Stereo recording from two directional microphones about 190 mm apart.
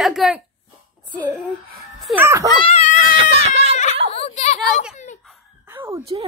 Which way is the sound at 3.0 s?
30° right (ahead or behind).